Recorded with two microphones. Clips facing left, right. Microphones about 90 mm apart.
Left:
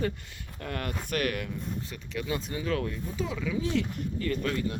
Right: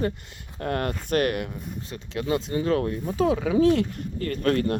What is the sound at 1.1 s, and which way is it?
Speech, 30° right (ahead or behind).